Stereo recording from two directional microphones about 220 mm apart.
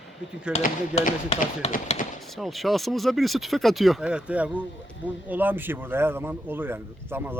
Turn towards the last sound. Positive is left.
turn(degrees=-10)  # may be behind; listen again after turning